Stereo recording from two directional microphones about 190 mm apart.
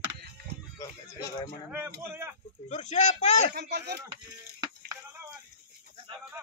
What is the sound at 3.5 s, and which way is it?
Speech, 60° right (ahead or behind).